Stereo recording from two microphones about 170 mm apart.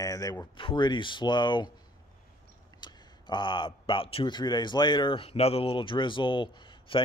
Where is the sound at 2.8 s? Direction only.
25° left (ahead or behind).